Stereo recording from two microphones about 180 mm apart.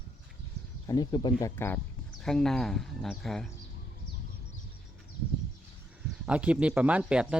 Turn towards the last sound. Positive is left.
turn(degrees=-5)  # may be behind; listen again after turning